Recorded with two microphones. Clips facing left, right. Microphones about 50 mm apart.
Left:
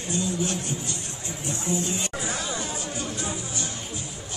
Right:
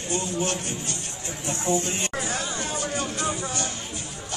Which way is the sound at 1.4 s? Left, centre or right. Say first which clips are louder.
Right 3 dB; right.